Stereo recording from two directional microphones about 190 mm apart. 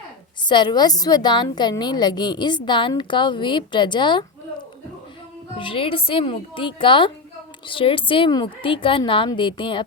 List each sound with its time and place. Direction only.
0.4 s a woman's voice: 25° left (ahead or behind)
5.5 s a woman's voice: 25° left (ahead or behind)